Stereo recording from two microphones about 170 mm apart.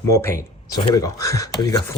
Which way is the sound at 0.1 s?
15° left (ahead or behind).